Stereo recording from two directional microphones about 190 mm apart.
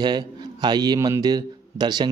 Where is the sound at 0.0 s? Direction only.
20° right (ahead or behind).